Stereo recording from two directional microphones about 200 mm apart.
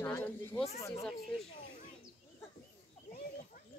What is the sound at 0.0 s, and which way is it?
Speech, 10° left (ahead or behind).